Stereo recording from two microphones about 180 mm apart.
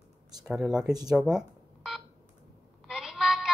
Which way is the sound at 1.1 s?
5° right (ahead or behind).